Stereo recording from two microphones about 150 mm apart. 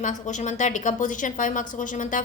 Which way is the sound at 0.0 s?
55° left (ahead or behind).